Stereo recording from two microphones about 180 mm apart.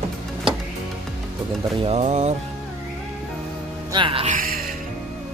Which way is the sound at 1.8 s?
40° right (ahead or behind).